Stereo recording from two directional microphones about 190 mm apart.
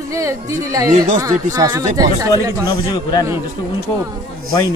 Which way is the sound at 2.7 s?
20° left (ahead or behind).